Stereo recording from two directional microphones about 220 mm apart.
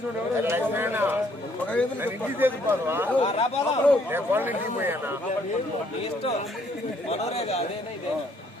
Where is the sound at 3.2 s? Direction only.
25° left (ahead or behind).